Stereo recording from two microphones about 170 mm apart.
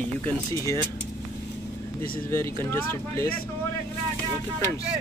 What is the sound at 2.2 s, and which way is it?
Speech, 15° left (ahead or behind).